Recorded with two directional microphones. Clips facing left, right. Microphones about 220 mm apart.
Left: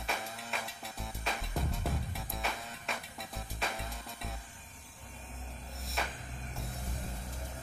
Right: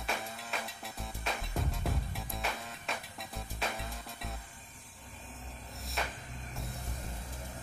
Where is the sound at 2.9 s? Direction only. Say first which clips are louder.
Right 1 dB; centre (ahead or behind).